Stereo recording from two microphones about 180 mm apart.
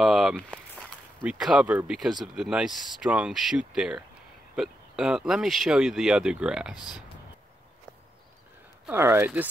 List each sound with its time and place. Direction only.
0.0 s speech: centre (ahead or behind)
8.8 s speech: 15° right (ahead or behind)